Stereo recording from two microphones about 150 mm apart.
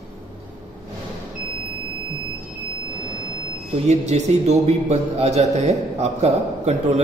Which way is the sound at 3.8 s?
50° right (ahead or behind).